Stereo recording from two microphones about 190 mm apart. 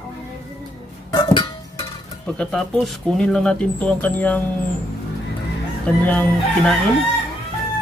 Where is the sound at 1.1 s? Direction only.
25° left (ahead or behind).